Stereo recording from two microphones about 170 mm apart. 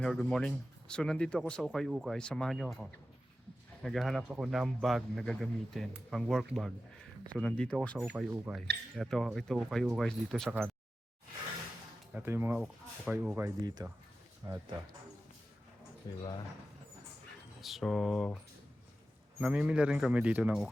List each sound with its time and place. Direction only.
0.0 s speech: 5° left (ahead or behind)
7.9 s speech: 10° right (ahead or behind)
12.1 s speech: 15° right (ahead or behind)
16.1 s speech: 25° left (ahead or behind)
17.6 s speech: centre (ahead or behind)
19.4 s speech: 5° right (ahead or behind)